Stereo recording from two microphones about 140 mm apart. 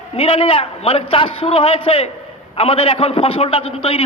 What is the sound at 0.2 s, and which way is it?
A man's voice, 45° left (ahead or behind).